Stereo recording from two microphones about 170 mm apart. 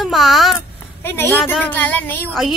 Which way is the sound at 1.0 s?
10° left (ahead or behind).